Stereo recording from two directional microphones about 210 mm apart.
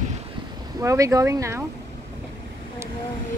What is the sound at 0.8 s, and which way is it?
Speech, 15° right (ahead or behind).